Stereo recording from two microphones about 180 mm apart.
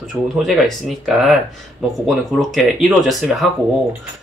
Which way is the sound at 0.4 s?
Centre (ahead or behind).